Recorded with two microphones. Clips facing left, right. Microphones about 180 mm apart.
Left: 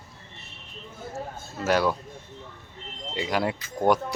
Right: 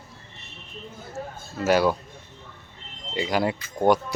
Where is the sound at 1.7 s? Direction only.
5° right (ahead or behind).